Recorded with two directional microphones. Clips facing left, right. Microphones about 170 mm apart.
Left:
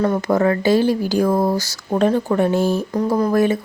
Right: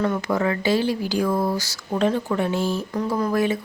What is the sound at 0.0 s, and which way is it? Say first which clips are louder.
Speech: left 5 dB; 40° left (ahead or behind).